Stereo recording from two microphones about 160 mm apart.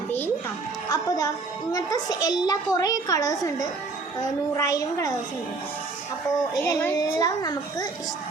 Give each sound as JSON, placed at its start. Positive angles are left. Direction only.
{"t": 0.9, "sound": "a child's voice", "side_deg": 25}
{"t": 6.6, "sound": "a child's voice", "side_deg": 15}